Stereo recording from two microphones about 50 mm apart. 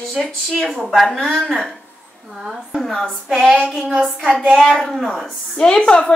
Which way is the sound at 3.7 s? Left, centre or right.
Centre.